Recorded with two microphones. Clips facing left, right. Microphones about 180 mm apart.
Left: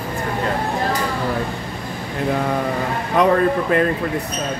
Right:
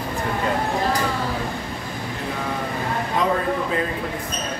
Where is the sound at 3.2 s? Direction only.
70° left (ahead or behind).